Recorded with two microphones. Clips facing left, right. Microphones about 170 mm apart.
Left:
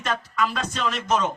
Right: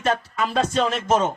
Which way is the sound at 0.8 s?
25° right (ahead or behind).